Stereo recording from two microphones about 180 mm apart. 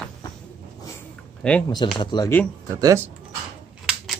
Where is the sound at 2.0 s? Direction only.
25° left (ahead or behind).